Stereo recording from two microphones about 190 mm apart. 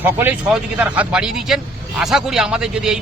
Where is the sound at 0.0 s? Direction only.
10° right (ahead or behind).